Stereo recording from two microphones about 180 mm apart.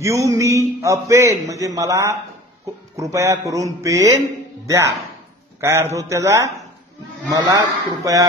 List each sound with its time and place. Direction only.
0.0 s a man's voice: 15° right (ahead or behind)